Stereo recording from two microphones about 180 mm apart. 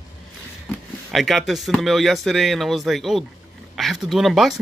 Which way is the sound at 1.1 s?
Centre (ahead or behind).